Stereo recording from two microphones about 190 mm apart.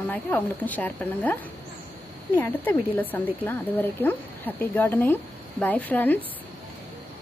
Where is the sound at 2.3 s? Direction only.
10° left (ahead or behind).